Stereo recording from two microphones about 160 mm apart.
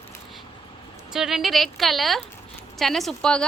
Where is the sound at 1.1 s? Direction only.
Centre (ahead or behind).